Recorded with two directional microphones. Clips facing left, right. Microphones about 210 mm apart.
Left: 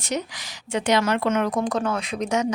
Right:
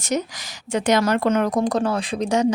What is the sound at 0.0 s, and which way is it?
Speech, 45° right (ahead or behind).